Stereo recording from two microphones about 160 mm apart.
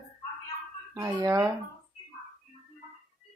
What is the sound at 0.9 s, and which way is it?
Speech, 20° right (ahead or behind).